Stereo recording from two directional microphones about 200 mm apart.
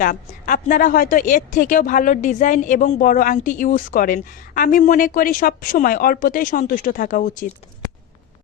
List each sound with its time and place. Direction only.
0.0 s a woman's voice: 45° left (ahead or behind)